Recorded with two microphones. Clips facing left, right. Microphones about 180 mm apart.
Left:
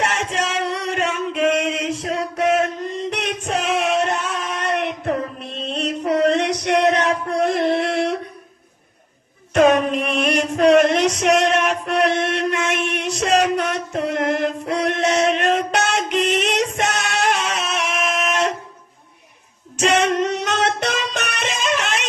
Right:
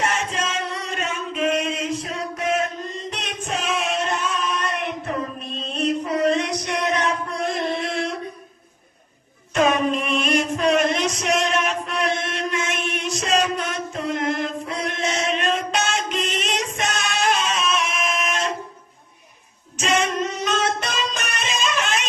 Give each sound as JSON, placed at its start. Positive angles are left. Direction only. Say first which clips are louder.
{"t": 0.0, "sound": "singing", "louder": "left 2 dB", "side_deg": 75}
{"t": 5.6, "sound": "music", "louder": "left 1 dB", "side_deg": 70}
{"t": 9.6, "sound": "music", "louder": "left 4 dB", "side_deg": 60}
{"t": 19.7, "sound": "music", "louder": "left 5 dB", "side_deg": 70}